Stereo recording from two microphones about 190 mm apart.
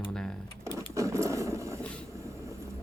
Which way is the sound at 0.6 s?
15° right (ahead or behind).